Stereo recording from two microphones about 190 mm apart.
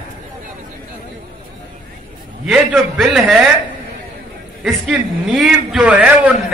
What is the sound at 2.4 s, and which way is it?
Speech, centre (ahead or behind).